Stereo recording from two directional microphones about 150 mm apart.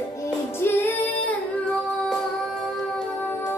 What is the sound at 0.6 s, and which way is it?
Music, 10° left (ahead or behind).